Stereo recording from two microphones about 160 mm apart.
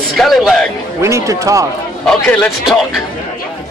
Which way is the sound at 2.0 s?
5° left (ahead or behind).